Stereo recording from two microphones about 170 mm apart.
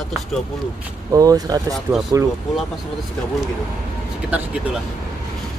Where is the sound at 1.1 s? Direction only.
20° right (ahead or behind).